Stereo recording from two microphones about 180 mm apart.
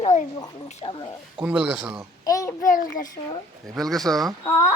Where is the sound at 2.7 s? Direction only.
45° left (ahead or behind).